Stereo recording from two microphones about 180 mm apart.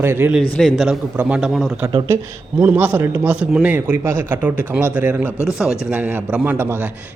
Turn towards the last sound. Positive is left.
turn(degrees=-10)  # may be behind; listen again after turning